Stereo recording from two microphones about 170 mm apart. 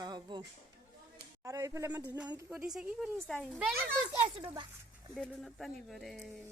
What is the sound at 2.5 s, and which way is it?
Speech, 5° right (ahead or behind).